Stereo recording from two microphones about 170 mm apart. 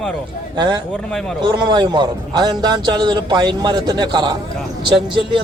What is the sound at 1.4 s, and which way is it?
A man's voice, 25° right (ahead or behind).